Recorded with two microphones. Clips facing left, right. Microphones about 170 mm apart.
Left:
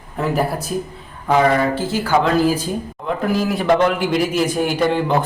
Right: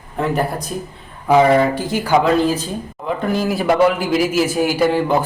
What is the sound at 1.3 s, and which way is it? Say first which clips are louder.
Speech: right 3 dB; 15° right (ahead or behind).